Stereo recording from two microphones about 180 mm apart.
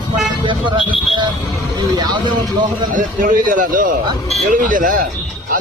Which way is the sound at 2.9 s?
50° right (ahead or behind).